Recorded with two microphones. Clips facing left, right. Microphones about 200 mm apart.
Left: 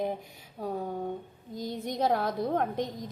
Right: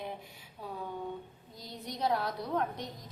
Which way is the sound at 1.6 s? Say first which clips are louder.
Left 7 dB; 50° left (ahead or behind).